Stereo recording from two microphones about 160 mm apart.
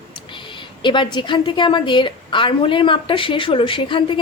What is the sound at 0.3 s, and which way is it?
A woman's voice, 30° left (ahead or behind).